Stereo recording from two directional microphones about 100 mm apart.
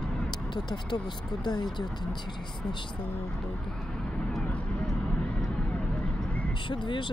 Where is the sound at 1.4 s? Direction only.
45° left (ahead or behind).